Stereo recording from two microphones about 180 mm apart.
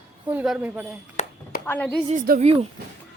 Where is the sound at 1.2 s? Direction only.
40° left (ahead or behind).